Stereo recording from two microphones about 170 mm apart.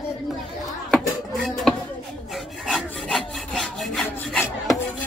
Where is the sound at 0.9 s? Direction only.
5° left (ahead or behind).